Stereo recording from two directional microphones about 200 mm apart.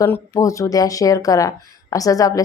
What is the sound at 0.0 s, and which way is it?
Speech, 15° left (ahead or behind).